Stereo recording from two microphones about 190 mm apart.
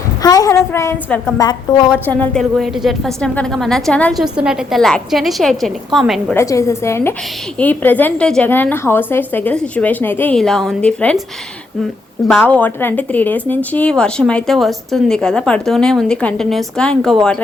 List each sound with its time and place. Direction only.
0.2 s a woman's voice: 20° left (ahead or behind); by 6.3 s centre (ahead or behind)
6.3 s a woman's voice: 15° left (ahead or behind)
12.4 s speech: 10° left (ahead or behind)